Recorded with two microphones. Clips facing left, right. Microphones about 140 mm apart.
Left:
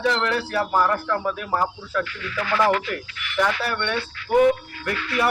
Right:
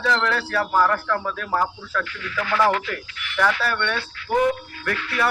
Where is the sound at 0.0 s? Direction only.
20° left (ahead or behind).